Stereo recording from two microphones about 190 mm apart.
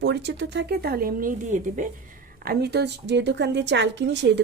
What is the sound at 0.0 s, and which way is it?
A woman's voice, 65° right (ahead or behind).